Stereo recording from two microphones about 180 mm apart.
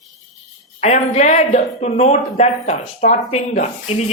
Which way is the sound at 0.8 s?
40° left (ahead or behind).